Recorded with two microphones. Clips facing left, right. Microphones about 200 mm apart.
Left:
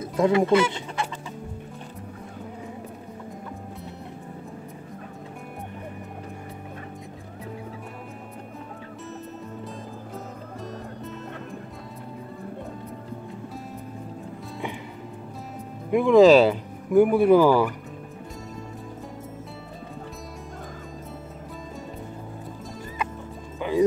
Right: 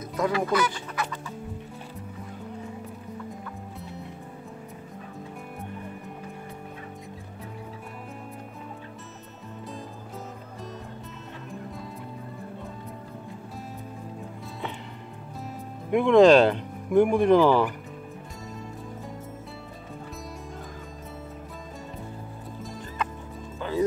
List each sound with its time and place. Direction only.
0.2 s speech: 25° left (ahead or behind)
15.9 s speech: centre (ahead or behind)
23.6 s music: 15° left (ahead or behind)